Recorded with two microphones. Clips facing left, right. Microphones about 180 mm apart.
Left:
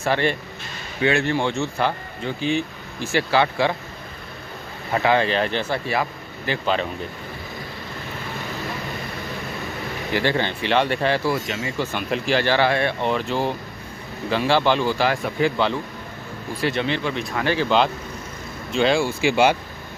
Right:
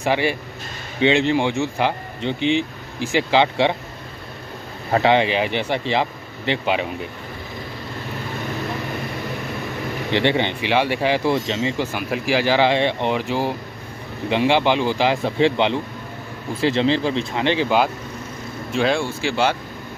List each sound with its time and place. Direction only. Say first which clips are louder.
0.0 s speech: right 1 dB; 10° right (ahead or behind)
5.0 s speech: right 1 dB; 20° right (ahead or behind)
10.1 s speech: right 3 dB; 20° right (ahead or behind)
11.3 s speech: right 5 dB; 25° right (ahead or behind)
11.8 s speech: right 1 dB; 10° right (ahead or behind)
19.0 s speech: left 3 dB; 15° left (ahead or behind)